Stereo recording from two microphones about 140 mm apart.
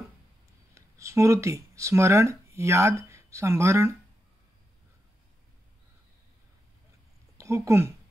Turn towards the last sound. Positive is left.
turn(degrees=-20)  # may be behind; listen again after turning